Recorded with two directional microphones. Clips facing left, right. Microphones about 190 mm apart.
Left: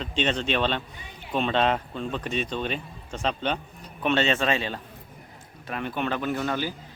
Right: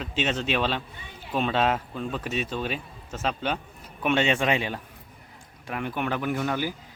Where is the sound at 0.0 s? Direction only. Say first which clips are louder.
Left 1 dB; 5° right (ahead or behind).